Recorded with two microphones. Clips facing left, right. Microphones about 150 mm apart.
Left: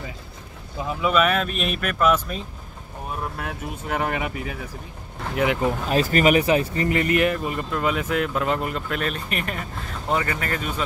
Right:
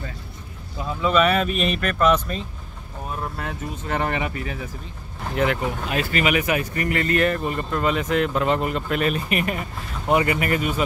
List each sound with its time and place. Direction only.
0.7 s speech: 15° left (ahead or behind)
1.1 s speech: centre (ahead or behind)
5.9 s speech: 40° left (ahead or behind); by 10.8 s 10° right (ahead or behind)